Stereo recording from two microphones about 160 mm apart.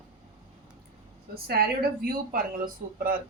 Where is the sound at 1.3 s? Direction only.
75° right (ahead or behind).